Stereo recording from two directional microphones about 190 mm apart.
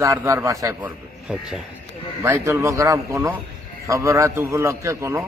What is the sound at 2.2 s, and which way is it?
A man's voice, 15° right (ahead or behind).